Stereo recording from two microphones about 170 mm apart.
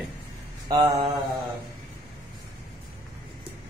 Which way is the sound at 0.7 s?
25° right (ahead or behind).